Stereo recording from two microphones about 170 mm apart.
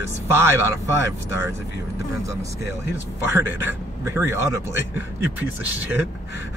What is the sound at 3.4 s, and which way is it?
Speech, 10° right (ahead or behind).